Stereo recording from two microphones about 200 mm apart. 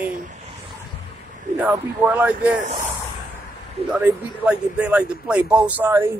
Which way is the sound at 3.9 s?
5° right (ahead or behind).